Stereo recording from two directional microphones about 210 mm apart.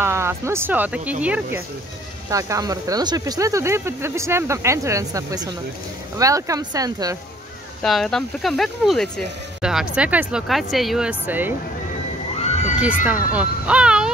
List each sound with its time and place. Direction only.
0.0 s speech: 10° right (ahead or behind)
2.3 s speech: 15° right (ahead or behind)
7.8 s speech: centre (ahead or behind)
12.4 s a sound: 30° left (ahead or behind)
13.0 s speech: 5° right (ahead or behind)